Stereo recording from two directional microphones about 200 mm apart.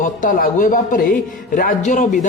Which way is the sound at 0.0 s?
40° left (ahead or behind).